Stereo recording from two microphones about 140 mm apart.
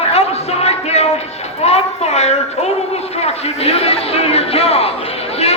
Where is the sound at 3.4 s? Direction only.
45° left (ahead or behind).